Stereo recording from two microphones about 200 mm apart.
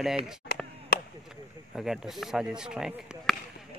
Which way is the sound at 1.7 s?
Centre (ahead or behind).